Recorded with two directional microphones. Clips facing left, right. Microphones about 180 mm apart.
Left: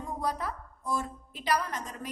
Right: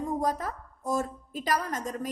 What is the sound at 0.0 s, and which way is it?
A woman's voice, 45° right (ahead or behind).